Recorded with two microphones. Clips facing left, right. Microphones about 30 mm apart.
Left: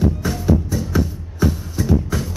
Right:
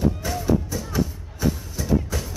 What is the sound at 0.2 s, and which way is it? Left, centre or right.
Music, centre.